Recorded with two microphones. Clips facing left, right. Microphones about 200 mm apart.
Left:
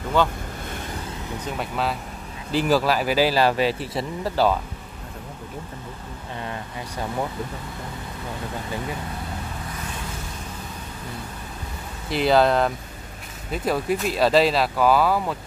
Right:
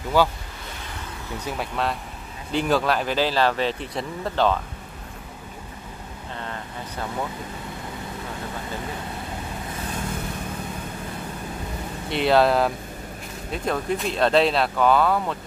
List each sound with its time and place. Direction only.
0.2 s speech: 10° right (ahead or behind)
1.4 s speech: centre (ahead or behind)
12.1 s speech: centre (ahead or behind)